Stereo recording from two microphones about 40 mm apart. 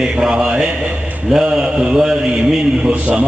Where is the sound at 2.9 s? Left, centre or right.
Right.